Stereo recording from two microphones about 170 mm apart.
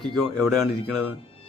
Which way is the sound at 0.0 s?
Centre (ahead or behind).